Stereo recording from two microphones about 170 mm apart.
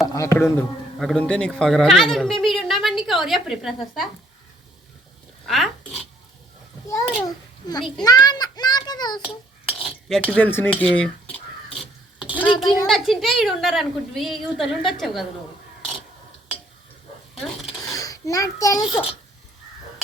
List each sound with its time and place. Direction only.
0.1 s speech: 15° left (ahead or behind)
0.9 s speech: centre (ahead or behind)
5.5 s speech: centre (ahead or behind)
7.3 s a child's voice: 25° left (ahead or behind)
9.6 s cutlery: 5° left (ahead or behind)
11.8 s a sound: 5° right (ahead or behind)
12.9 s speech: centre (ahead or behind)
17.3 s a sound: centre (ahead or behind)
17.9 s a child's voice: 20° left (ahead or behind)